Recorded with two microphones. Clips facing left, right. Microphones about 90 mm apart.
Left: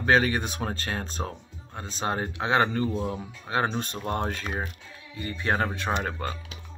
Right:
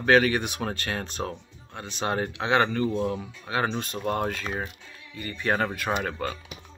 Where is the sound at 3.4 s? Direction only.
30° left (ahead or behind).